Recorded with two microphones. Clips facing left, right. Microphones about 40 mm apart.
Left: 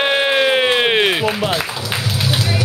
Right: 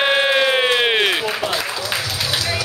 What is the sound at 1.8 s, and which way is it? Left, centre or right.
Music, centre.